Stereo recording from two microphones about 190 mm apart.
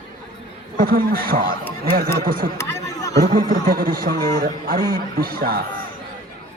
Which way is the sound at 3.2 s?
45° right (ahead or behind).